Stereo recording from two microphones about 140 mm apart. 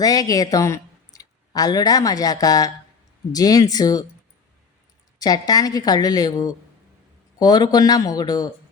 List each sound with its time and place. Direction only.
0.0 s a woman's voice: 25° left (ahead or behind)
5.2 s a woman's voice: 25° left (ahead or behind)